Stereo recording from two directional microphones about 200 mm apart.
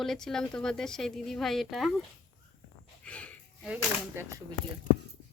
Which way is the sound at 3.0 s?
5° left (ahead or behind).